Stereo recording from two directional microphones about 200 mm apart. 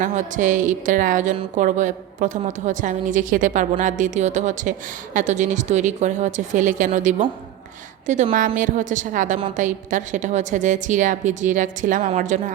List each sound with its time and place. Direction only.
0.0 s a woman's voice: 40° right (ahead or behind)